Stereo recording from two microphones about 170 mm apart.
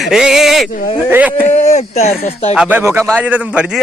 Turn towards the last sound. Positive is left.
turn(degrees=-10)  # may be behind; listen again after turning